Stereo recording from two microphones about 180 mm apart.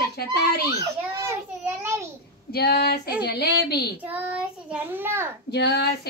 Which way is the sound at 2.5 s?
60° left (ahead or behind).